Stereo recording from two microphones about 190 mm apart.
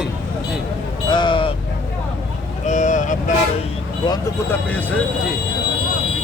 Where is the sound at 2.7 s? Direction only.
40° left (ahead or behind).